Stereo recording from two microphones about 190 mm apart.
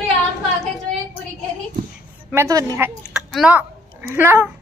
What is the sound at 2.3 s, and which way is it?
Speech, 15° right (ahead or behind).